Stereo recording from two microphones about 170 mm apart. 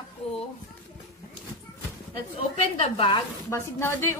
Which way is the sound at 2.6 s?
35° left (ahead or behind).